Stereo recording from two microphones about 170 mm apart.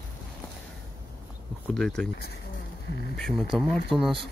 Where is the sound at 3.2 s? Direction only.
Centre (ahead or behind).